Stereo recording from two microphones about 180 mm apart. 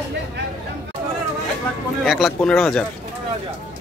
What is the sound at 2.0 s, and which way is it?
Speech, centre (ahead or behind).